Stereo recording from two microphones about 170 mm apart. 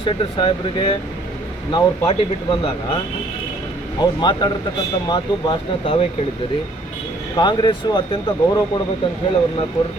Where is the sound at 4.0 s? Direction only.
25° left (ahead or behind).